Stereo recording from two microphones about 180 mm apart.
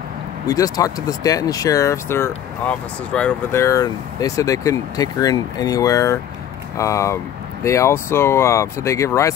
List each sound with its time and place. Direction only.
0.5 s speech: 20° left (ahead or behind)